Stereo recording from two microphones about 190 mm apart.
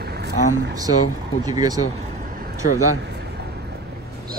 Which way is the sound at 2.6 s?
50° left (ahead or behind).